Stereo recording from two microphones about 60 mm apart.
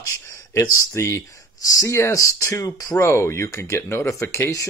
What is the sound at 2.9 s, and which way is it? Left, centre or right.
Speech, left.